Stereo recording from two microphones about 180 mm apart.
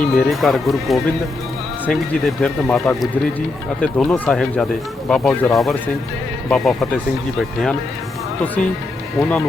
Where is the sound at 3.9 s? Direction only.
Centre (ahead or behind).